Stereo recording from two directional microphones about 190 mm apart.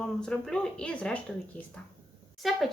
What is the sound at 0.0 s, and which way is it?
A woman's voice, 5° left (ahead or behind).